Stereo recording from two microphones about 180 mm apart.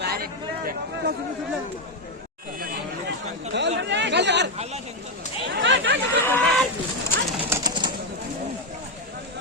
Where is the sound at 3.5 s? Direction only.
75° right (ahead or behind).